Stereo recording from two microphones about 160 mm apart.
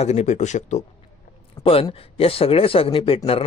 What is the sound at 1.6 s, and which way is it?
Speech, 35° left (ahead or behind).